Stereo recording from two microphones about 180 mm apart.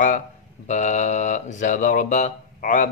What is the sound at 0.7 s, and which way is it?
Speech, 40° left (ahead or behind).